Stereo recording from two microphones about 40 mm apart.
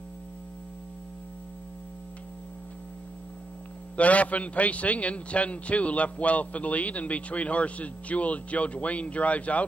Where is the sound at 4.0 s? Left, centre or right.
Left.